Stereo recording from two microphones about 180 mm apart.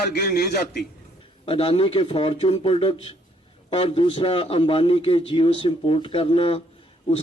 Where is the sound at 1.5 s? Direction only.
30° left (ahead or behind).